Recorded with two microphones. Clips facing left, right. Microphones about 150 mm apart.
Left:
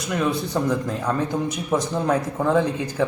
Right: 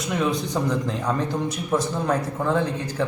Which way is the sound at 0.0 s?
Centre (ahead or behind).